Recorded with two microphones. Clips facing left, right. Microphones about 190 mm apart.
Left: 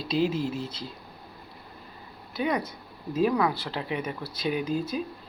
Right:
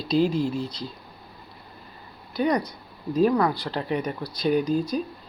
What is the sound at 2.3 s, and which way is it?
Speech, 5° left (ahead or behind).